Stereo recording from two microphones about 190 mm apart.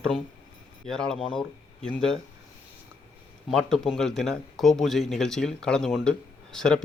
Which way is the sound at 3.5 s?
Centre (ahead or behind).